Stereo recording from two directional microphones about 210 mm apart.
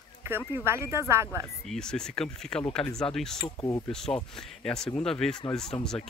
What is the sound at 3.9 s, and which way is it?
Speech, 5° left (ahead or behind).